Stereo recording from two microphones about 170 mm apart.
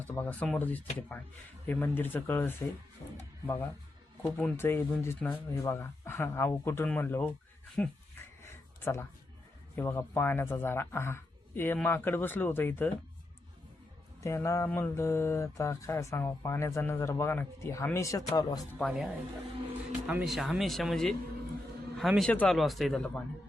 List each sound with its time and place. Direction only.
0.0 s mantra: 10° left (ahead or behind)
8.8 s speech: 15° left (ahead or behind)
9.7 s mantra: 15° left (ahead or behind)
14.2 s mantra: 20° left (ahead or behind)
18.8 s speech: centre (ahead or behind)
20.1 s a man's voice: 5° right (ahead or behind)